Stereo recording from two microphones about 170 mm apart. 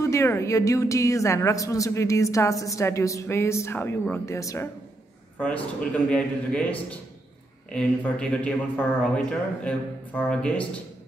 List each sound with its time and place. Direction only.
0.0 s a woman's voice: 15° left (ahead or behind)
5.4 s a woman's voice: 5° left (ahead or behind)
7.7 s a woman's voice: 5° left (ahead or behind)